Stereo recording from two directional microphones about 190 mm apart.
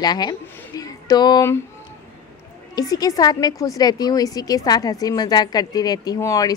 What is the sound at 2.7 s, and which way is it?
A woman's voice, 20° left (ahead or behind).